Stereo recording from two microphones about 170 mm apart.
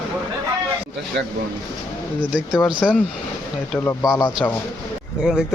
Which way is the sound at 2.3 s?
5° right (ahead or behind).